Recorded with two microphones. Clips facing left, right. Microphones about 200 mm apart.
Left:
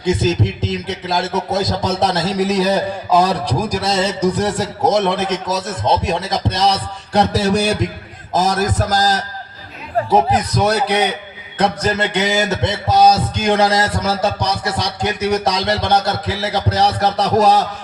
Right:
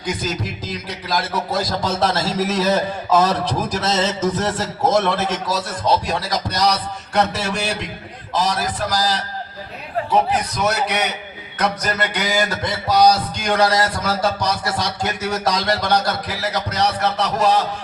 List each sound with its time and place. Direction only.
0.0 s a man's voice: 25° left (ahead or behind)